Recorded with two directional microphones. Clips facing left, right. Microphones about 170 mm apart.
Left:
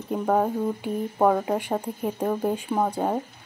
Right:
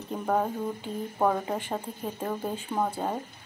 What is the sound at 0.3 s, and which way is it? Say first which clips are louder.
Speech: left 4 dB; 10° left (ahead or behind).